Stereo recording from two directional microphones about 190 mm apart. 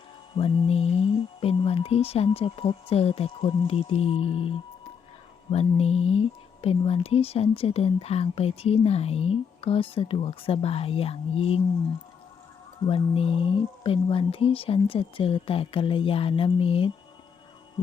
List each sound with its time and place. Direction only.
0.3 s speech: 25° left (ahead or behind)
12.8 s speech: 30° left (ahead or behind)